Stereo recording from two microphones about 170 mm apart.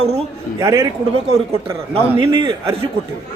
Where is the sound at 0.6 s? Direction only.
20° right (ahead or behind).